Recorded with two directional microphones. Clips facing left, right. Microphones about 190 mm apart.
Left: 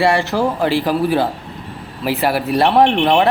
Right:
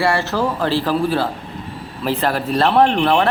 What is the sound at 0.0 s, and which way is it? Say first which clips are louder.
Speech: left 3 dB; 15° left (ahead or behind).